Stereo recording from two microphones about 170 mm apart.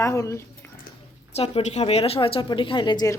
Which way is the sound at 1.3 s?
40° left (ahead or behind).